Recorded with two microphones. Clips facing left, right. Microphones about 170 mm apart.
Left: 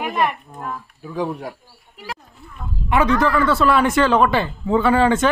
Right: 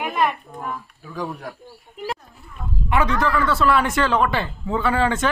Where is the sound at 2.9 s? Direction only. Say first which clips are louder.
Left 4 dB; 20° left (ahead or behind).